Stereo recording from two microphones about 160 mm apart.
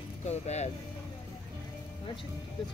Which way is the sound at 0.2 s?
45° left (ahead or behind).